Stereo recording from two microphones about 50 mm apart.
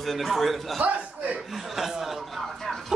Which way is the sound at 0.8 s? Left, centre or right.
Right.